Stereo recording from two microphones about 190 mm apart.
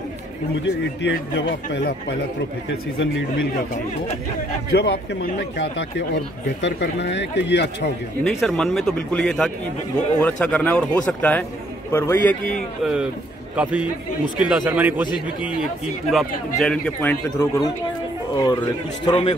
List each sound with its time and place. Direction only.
0.7 s speech: 65° left (ahead or behind)
4.7 s speech: 60° left (ahead or behind)
8.2 s a man's voice: 5° left (ahead or behind)
12.8 s a man's voice: 5° right (ahead or behind)
16.1 s a man's voice: centre (ahead or behind)
18.4 s a man's voice: 25° left (ahead or behind)